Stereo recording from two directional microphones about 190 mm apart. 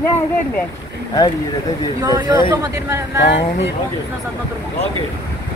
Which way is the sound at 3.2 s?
65° left (ahead or behind).